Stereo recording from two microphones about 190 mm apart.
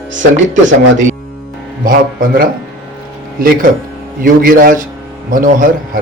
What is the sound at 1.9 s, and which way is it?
Speech, 45° right (ahead or behind).